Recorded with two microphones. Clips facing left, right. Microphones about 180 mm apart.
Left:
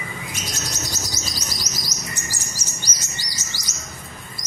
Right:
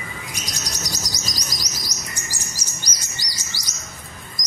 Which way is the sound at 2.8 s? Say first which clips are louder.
Left 1 dB; 10° right (ahead or behind).